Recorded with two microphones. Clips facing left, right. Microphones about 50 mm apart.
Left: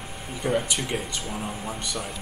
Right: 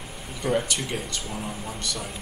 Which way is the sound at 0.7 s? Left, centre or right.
Centre.